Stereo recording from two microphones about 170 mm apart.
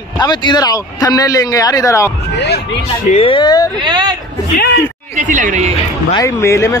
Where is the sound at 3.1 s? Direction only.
30° left (ahead or behind).